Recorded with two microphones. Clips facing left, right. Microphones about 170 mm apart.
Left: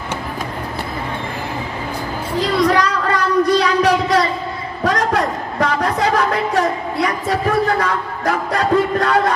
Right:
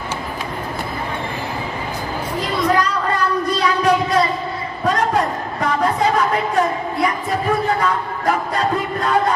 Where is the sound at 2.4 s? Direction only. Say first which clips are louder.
Left 3 dB; 80° left.